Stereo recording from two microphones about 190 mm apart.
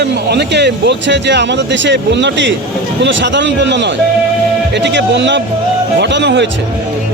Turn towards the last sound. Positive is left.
turn(degrees=-70)  # may be behind; listen again after turning